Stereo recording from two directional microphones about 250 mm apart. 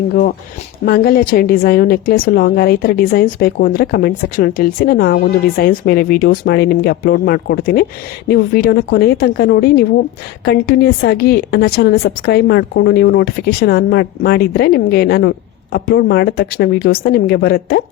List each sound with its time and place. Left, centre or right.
0.1 s a woman's voice: left